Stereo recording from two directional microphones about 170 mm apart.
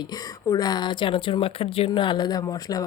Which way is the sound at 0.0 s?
20° left (ahead or behind).